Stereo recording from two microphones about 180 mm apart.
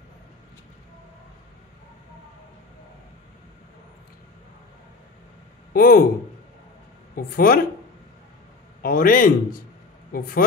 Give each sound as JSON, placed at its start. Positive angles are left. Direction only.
{"t": 5.7, "sound": "speech", "side_deg": 55}
{"t": 7.2, "sound": "speech", "side_deg": 55}
{"t": 8.8, "sound": "a man's voice", "side_deg": 50}